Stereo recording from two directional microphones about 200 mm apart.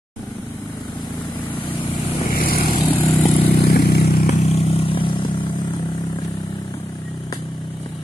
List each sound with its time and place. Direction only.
2.3 s vehicle: 45° left (ahead or behind)
2.9 s vehicle: 10° left (ahead or behind)
3.4 s vehicle: 50° left (ahead or behind)
4.3 s vehicle: 30° left (ahead or behind)